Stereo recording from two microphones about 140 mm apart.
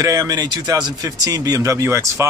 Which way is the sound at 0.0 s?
25° right (ahead or behind).